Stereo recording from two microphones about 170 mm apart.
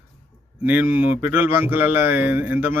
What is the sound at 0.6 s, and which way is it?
Speech, 10° right (ahead or behind).